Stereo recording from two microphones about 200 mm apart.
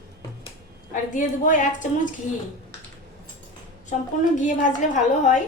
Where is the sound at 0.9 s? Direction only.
40° left (ahead or behind).